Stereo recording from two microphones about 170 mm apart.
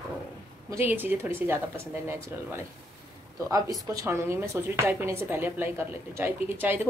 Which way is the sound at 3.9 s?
15° right (ahead or behind).